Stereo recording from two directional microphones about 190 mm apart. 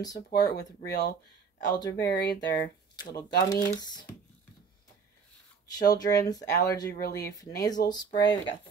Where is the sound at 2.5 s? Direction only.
15° left (ahead or behind).